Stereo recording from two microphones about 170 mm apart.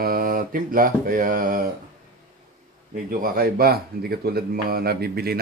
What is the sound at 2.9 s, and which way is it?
Speech, 55° right (ahead or behind).